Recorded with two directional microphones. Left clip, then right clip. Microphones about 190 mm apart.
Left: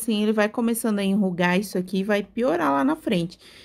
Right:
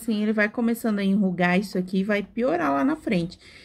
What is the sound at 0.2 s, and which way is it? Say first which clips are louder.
Speech: left 1 dB; 30° left (ahead or behind).